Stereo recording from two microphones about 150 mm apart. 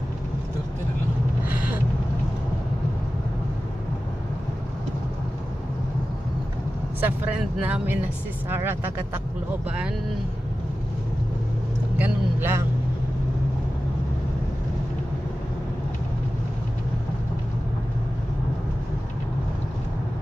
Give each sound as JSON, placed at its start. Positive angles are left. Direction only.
{"t": 7.0, "sound": "speech", "side_deg": -10}
{"t": 12.0, "sound": "speech", "side_deg": -15}